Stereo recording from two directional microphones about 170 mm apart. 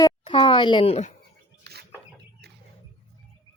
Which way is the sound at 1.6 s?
70° right (ahead or behind).